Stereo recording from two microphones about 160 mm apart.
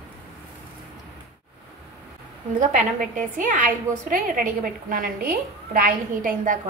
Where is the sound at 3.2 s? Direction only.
55° right (ahead or behind).